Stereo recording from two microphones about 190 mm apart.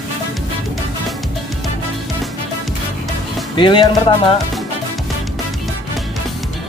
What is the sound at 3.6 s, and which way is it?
Speech, 25° left (ahead or behind).